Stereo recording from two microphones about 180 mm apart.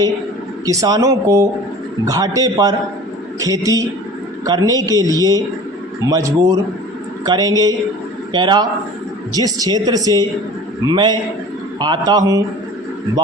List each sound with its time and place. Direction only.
0.6 s speech: 20° right (ahead or behind)